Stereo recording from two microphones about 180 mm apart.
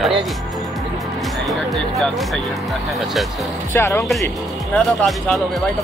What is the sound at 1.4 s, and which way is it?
Speech, centre (ahead or behind).